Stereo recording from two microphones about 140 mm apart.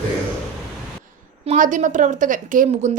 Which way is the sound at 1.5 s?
65° right (ahead or behind).